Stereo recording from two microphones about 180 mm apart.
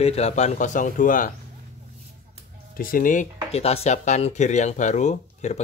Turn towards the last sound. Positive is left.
turn(degrees=40)  # may be behind; listen again after turning